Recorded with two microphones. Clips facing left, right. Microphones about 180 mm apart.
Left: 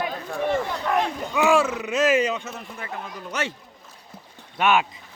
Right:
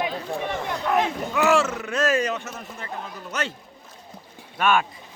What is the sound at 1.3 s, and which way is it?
Speech, 10° left (ahead or behind).